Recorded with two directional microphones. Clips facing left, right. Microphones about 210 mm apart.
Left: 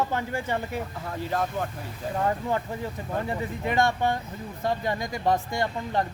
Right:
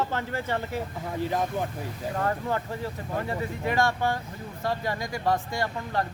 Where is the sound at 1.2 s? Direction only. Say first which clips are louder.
Right 1 dB; 15° right (ahead or behind).